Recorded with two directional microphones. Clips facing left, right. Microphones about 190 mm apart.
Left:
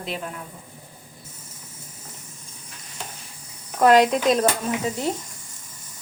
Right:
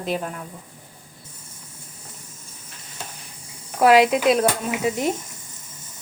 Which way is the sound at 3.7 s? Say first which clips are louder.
Right 1 dB; 5° right (ahead or behind).